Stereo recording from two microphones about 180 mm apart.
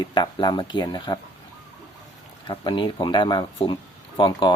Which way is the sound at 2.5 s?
25° left (ahead or behind).